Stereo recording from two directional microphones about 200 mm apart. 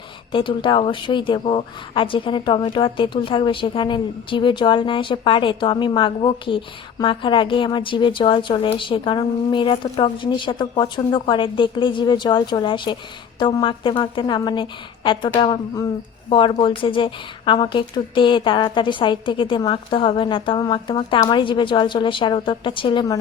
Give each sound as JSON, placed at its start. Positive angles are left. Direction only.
{"t": 0.3, "sound": "a woman's voice", "side_deg": 25}